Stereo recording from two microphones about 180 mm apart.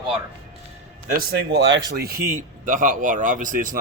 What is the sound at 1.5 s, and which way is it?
Speech, 85° right.